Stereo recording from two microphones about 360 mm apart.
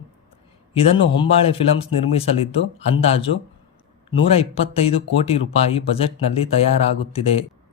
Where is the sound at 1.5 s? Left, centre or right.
Centre.